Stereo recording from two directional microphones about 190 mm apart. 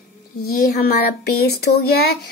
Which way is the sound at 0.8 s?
55° left (ahead or behind).